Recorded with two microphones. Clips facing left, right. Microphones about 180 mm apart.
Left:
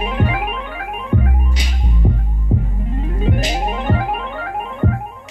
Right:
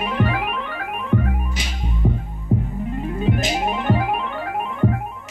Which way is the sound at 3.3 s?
20° left (ahead or behind).